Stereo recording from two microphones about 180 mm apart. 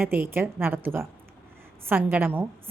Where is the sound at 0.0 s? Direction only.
10° right (ahead or behind).